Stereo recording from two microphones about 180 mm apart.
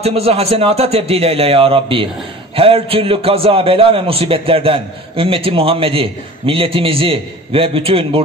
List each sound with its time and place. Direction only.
0.0 s a man's voice: 35° right (ahead or behind)